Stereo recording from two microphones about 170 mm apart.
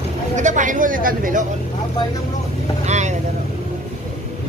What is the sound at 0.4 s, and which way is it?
Speech, 45° right (ahead or behind).